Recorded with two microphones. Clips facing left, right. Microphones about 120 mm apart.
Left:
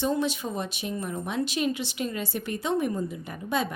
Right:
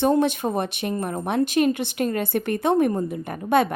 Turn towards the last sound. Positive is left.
turn(degrees=-60)  # may be behind; listen again after turning